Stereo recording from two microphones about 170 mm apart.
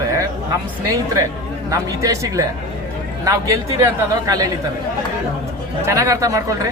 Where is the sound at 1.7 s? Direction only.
20° right (ahead or behind).